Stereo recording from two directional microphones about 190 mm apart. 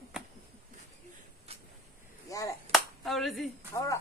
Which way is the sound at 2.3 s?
15° left (ahead or behind).